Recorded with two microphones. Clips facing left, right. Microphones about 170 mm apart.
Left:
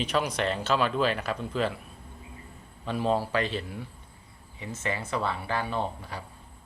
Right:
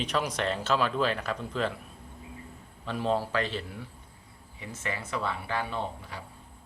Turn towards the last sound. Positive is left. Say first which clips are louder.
# left 3 dB
turn(degrees=35)  # may be behind; listen again after turning